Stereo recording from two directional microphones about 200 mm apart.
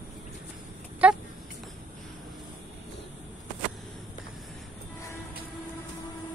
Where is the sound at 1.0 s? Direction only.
5° right (ahead or behind).